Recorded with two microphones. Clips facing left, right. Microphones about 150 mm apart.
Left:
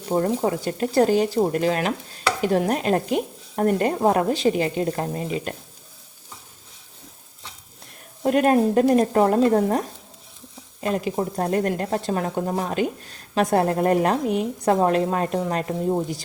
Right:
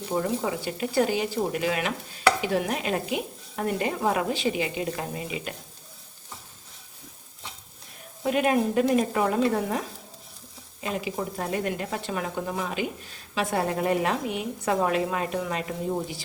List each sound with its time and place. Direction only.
0.2 s speech: 45° left (ahead or behind)
8.2 s a woman's voice: 45° left (ahead or behind)